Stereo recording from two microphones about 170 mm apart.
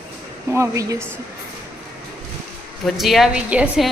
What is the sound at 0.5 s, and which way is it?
Speech, 15° right (ahead or behind).